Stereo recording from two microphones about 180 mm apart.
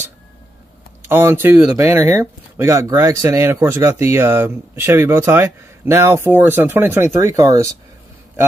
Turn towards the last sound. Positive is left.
turn(degrees=-15)  # may be behind; listen again after turning